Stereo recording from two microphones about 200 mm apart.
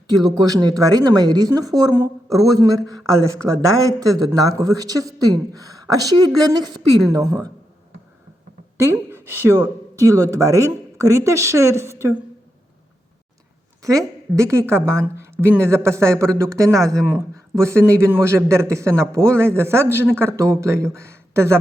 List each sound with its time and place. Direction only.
0.8 s speech: 20° right (ahead or behind)
8.8 s speech: 10° right (ahead or behind)
13.8 s speech: 15° right (ahead or behind)